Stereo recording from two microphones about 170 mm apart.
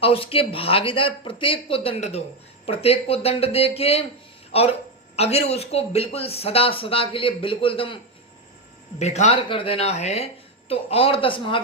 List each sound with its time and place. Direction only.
0.0 s speech: 35° left (ahead or behind)
9.0 s speech: 40° left (ahead or behind)